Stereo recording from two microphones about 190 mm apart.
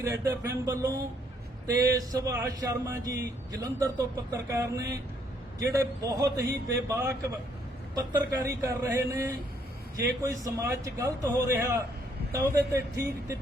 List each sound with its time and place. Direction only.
0.0 s a man's voice: 15° right (ahead or behind)
10.4 s a man's voice: 15° right (ahead or behind)